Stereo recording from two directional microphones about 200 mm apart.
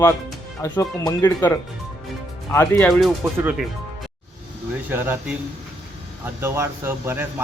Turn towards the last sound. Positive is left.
turn(degrees=-10)  # may be behind; listen again after turning